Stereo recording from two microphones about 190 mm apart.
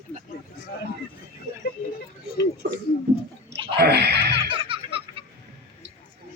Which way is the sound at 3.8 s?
60° right (ahead or behind).